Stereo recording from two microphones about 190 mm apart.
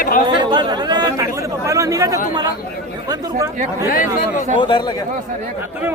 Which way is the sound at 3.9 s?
45° left (ahead or behind).